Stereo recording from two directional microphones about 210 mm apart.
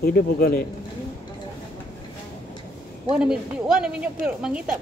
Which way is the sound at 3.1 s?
5° right (ahead or behind).